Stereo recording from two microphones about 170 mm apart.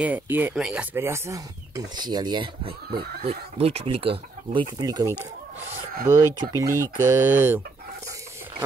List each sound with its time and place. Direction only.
0.0 s speech: 10° right (ahead or behind); by 2.7 s 25° right (ahead or behind)
2.9 s speech: 65° right (ahead or behind)
3.3 s speech: 35° right (ahead or behind); by 7.6 s 10° right (ahead or behind)